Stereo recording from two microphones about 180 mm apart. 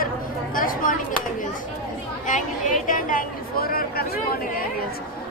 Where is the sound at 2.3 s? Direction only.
45° left (ahead or behind).